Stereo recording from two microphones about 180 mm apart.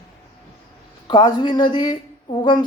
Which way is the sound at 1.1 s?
25° left (ahead or behind).